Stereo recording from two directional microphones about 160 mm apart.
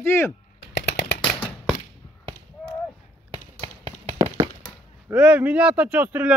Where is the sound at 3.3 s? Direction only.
35° right (ahead or behind).